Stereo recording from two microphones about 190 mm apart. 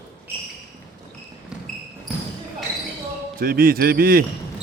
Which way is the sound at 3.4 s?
50° right (ahead or behind).